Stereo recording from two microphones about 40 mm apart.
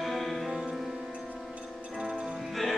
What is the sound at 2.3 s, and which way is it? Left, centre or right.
Music, centre.